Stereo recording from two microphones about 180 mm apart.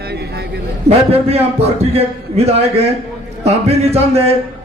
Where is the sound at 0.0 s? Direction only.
65° right (ahead or behind).